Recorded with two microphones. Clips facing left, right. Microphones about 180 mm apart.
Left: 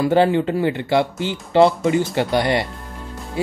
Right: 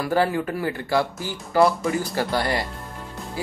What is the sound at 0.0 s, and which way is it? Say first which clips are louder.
Speech: left 6 dB; 20° left (ahead or behind).